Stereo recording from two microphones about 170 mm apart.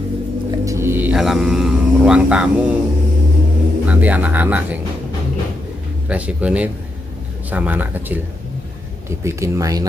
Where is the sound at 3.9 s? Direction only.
10° right (ahead or behind).